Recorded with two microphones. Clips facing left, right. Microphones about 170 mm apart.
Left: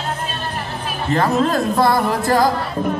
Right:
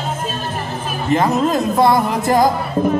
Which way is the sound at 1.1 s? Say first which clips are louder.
Right 1 dB; 20° right (ahead or behind).